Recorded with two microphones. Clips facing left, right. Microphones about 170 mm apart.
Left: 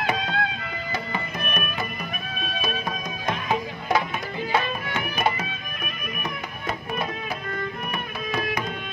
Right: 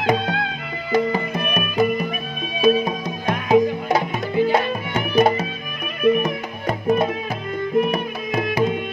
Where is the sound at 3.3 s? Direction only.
40° right (ahead or behind).